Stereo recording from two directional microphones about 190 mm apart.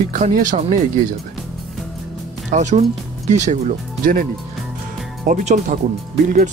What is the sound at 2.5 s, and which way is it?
Speech, 40° right (ahead or behind).